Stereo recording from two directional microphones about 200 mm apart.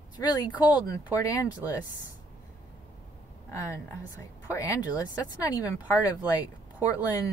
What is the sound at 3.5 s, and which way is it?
Speech, 15° left (ahead or behind).